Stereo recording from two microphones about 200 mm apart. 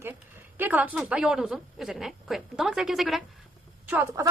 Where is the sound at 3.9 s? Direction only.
10° right (ahead or behind).